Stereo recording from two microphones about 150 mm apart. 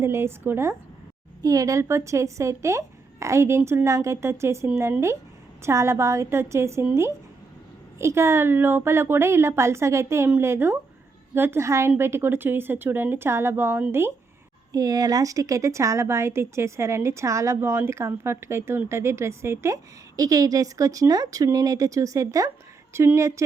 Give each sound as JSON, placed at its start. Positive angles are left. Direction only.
{"t": 0.0, "sound": "a woman's voice", "side_deg": -15}
{"t": 14.7, "sound": "a woman's voice", "side_deg": -25}